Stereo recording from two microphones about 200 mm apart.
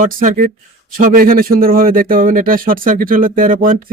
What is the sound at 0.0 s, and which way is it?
A man's voice, 45° right (ahead or behind).